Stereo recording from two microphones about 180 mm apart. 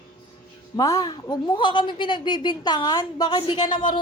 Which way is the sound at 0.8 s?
20° left (ahead or behind).